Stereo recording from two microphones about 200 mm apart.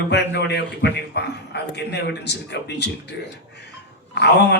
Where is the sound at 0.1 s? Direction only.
55° left (ahead or behind).